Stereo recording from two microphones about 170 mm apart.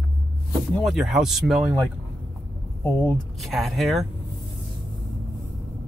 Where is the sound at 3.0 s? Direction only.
Centre (ahead or behind).